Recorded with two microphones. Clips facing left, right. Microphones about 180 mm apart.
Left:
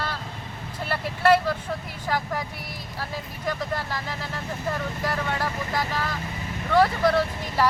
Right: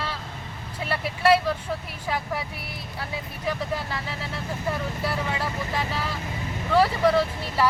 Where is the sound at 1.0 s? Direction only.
10° right (ahead or behind).